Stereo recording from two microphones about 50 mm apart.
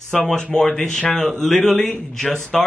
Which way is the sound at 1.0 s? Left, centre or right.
Left.